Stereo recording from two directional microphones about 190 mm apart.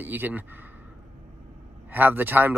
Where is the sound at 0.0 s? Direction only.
10° right (ahead or behind).